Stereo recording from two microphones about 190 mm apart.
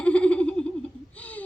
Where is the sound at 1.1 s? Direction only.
10° left (ahead or behind).